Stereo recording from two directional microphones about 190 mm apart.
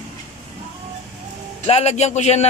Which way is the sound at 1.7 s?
35° left (ahead or behind).